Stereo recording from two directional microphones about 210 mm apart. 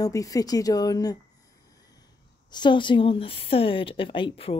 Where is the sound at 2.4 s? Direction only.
20° left (ahead or behind).